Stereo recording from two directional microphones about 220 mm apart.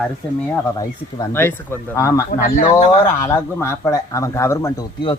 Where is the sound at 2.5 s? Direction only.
30° left (ahead or behind).